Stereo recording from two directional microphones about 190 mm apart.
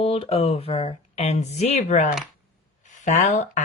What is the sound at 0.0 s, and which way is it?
A woman's voice, 30° left (ahead or behind).